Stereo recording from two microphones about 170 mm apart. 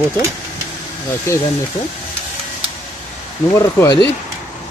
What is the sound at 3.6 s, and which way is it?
Speech, 20° left (ahead or behind).